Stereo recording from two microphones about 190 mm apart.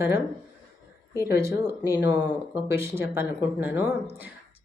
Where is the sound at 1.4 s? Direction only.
15° right (ahead or behind).